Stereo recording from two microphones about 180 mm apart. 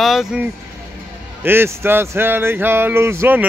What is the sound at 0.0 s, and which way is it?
Speech, centre (ahead or behind).